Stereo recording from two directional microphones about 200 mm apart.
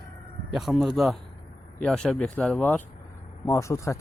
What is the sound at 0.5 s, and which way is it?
Speech, centre (ahead or behind).